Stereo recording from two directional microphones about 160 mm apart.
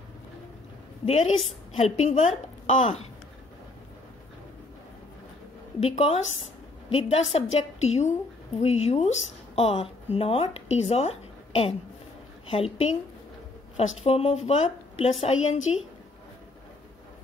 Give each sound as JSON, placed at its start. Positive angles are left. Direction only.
{"t": 1.0, "sound": "a woman's voice", "side_deg": 45}
{"t": 5.8, "sound": "a woman's voice", "side_deg": 40}